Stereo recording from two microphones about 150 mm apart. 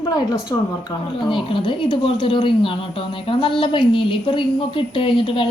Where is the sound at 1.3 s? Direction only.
35° left (ahead or behind).